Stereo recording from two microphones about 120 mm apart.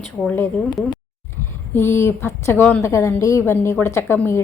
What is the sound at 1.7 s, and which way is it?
A woman's voice, 20° left (ahead or behind).